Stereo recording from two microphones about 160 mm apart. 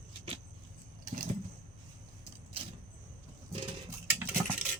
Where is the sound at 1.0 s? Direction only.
55° right (ahead or behind).